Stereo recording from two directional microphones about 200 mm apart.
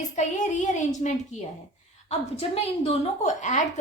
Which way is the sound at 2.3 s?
35° left (ahead or behind).